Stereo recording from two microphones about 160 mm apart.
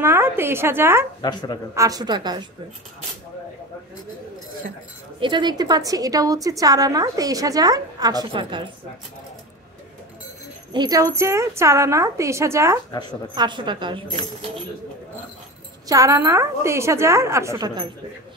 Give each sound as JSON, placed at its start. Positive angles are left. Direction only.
{"t": 0.0, "sound": "a woman's voice", "side_deg": -15}
{"t": 1.2, "sound": "speech", "side_deg": 25}
{"t": 1.8, "sound": "a woman's voice", "side_deg": -25}
{"t": 5.2, "sound": "a woman's voice", "side_deg": -30}
{"t": 10.7, "sound": "a woman's voice", "side_deg": -25}
{"t": 15.9, "sound": "a woman's voice", "side_deg": -20}